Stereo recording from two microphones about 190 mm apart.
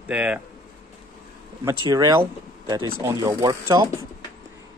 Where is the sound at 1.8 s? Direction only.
20° right (ahead or behind).